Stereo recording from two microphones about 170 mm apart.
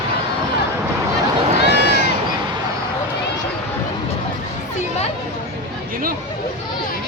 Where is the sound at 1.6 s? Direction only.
85° left.